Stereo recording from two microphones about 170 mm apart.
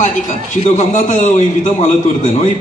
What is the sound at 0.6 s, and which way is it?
Speech, 45° left (ahead or behind).